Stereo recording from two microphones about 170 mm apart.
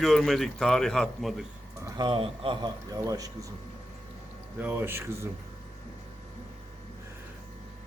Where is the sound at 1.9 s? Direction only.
30° right (ahead or behind).